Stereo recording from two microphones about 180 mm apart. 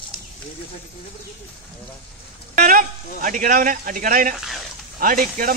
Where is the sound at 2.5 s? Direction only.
50° right (ahead or behind).